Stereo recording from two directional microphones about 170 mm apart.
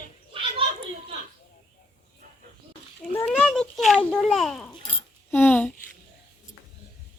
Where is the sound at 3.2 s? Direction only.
5° left (ahead or behind).